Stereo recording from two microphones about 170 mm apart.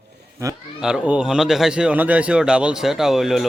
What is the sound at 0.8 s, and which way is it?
A man's voice, 5° right (ahead or behind).